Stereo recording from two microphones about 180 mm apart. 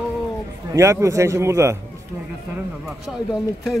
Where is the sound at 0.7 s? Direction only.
15° right (ahead or behind).